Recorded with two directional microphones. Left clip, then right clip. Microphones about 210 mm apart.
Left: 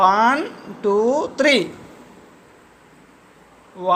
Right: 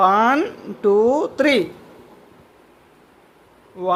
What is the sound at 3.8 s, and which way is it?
Speech, 20° right (ahead or behind).